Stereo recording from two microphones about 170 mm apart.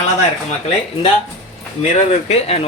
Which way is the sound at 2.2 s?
40° left (ahead or behind).